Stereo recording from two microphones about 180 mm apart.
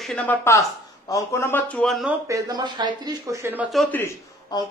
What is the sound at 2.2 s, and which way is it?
Speech, 20° right (ahead or behind).